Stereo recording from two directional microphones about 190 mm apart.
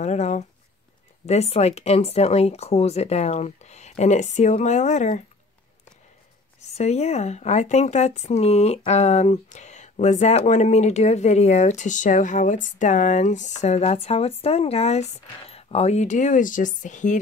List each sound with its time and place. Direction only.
0.0 s speech: 35° left (ahead or behind)
6.7 s speech: 35° left (ahead or behind)